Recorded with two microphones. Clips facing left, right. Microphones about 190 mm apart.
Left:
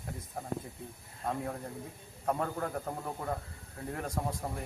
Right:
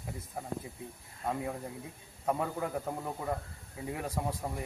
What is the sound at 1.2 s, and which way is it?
A man's voice, centre (ahead or behind).